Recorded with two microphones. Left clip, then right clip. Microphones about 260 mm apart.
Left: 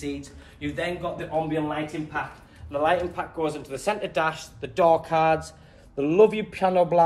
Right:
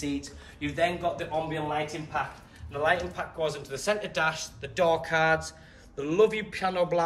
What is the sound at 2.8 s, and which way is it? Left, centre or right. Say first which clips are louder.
A man's voice: left 3 dB; centre.